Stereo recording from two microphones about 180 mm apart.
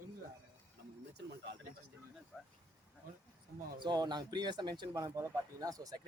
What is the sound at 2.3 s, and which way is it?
Speech, 5° left (ahead or behind).